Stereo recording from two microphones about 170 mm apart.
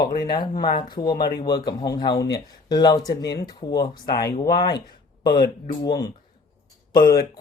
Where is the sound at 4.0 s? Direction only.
60° left (ahead or behind).